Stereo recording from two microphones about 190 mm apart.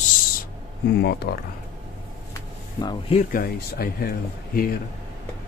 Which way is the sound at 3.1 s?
50° left (ahead or behind).